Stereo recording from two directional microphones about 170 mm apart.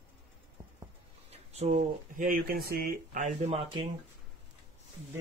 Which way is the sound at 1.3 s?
40° right (ahead or behind).